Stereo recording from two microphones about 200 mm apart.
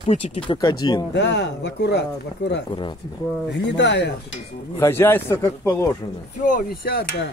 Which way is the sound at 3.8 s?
60° left (ahead or behind).